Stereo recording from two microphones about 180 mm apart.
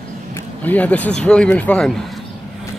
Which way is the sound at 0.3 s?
10° left (ahead or behind).